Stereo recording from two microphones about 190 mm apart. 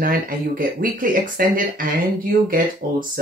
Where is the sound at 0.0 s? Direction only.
50° right (ahead or behind).